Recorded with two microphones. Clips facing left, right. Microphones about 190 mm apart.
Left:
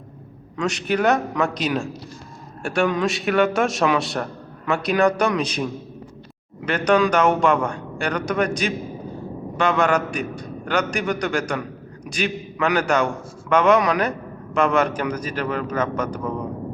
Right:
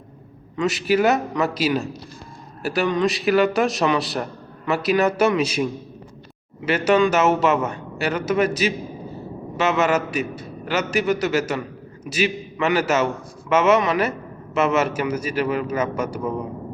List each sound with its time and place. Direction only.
0.5 s a man's voice: 5° right (ahead or behind)
6.7 s a man's voice: 5° right (ahead or behind)